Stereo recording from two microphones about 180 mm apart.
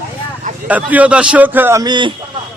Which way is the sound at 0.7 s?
10° right (ahead or behind).